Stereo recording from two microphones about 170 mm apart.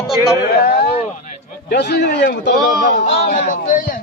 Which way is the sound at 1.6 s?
75° left (ahead or behind).